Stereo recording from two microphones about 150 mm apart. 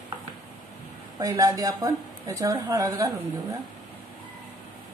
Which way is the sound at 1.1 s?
20° right (ahead or behind).